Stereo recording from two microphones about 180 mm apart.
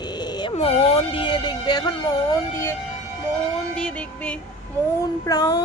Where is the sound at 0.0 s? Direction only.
25° left (ahead or behind).